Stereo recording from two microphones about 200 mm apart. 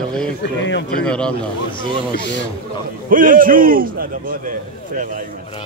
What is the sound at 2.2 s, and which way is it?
Speech, 65° left (ahead or behind).